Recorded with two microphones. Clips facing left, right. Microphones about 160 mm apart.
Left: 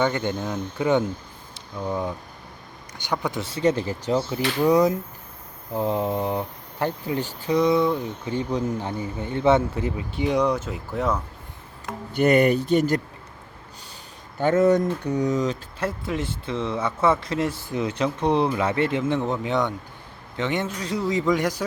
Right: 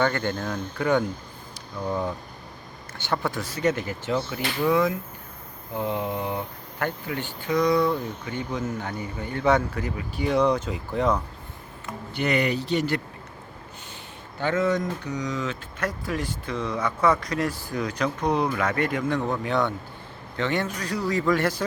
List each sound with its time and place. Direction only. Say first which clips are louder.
0.0 s speech: left 1 dB; 15° left (ahead or behind)
1.8 s speech: even; 5° left (ahead or behind)
3.4 s speech: left 3 dB; 30° left (ahead or behind)
8.3 s speech: left 5 dB; 30° left (ahead or behind); by 11.2 s 5° left (ahead or behind)
12.1 s speech: left 6 dB; 50° left (ahead or behind)
14.4 s speech: left 5 dB; 45° left (ahead or behind)
15.8 s speech: left 1 dB; 25° left (ahead or behind)